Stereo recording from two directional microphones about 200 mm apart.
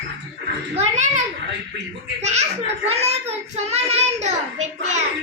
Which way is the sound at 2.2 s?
35° right (ahead or behind).